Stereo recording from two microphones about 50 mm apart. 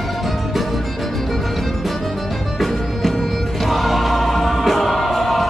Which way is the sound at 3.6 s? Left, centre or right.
Centre.